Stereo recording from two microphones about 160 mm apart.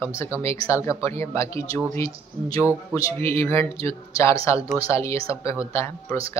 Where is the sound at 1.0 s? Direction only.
15° left (ahead or behind).